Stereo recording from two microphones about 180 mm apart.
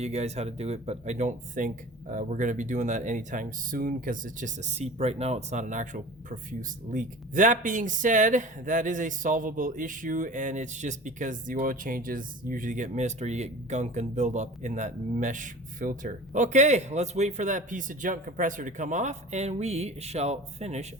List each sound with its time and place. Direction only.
0.0 s speech: 35° right (ahead or behind)